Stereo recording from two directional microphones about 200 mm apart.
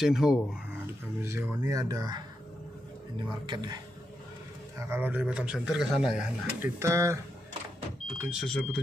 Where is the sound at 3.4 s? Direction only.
20° right (ahead or behind).